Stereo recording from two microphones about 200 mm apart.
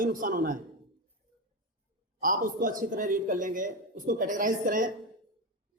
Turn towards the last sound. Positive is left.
turn(degrees=-40)  # may be behind; listen again after turning